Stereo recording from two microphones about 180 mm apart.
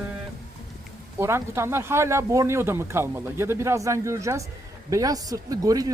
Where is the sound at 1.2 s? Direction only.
15° right (ahead or behind).